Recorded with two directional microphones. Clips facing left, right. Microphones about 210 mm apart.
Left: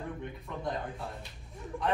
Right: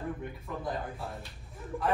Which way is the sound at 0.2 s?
5° right (ahead or behind).